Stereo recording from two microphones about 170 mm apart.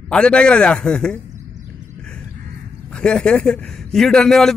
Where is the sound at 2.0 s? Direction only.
5° left (ahead or behind).